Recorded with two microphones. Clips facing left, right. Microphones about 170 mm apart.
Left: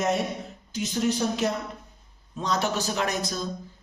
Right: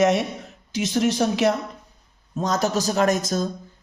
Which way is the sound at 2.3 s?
45° right (ahead or behind).